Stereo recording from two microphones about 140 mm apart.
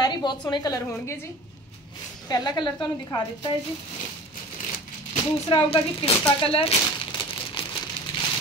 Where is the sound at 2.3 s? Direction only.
30° left (ahead or behind).